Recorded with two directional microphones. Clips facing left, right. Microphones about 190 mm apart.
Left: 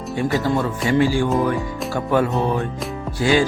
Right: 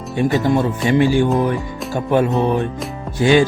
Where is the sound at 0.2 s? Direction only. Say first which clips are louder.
Right 4 dB; 20° right (ahead or behind).